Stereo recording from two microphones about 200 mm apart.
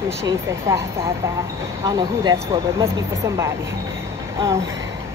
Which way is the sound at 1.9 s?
20° right (ahead or behind).